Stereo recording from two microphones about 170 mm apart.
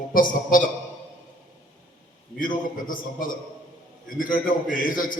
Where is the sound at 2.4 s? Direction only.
55° left (ahead or behind).